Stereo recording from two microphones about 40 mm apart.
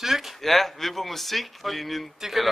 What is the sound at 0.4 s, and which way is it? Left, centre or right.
Speech, centre.